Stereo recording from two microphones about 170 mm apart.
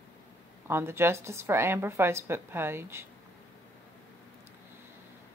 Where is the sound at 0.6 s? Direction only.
15° right (ahead or behind).